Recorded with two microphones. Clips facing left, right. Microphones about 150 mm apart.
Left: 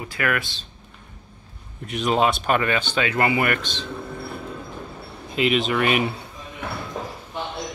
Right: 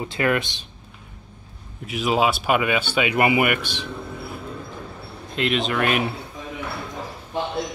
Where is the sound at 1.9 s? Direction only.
5° right (ahead or behind).